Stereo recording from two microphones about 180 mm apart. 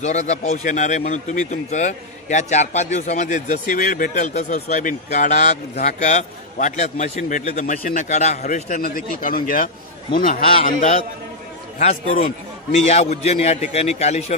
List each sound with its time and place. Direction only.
0.0 s speech: 40° left (ahead or behind)